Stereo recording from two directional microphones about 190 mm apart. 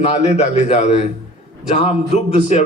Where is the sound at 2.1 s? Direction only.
35° left (ahead or behind).